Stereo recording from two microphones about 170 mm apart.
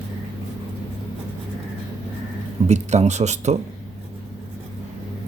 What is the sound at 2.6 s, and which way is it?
Speech, 40° right (ahead or behind).